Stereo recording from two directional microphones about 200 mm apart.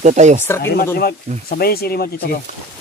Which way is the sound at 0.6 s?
50° left (ahead or behind).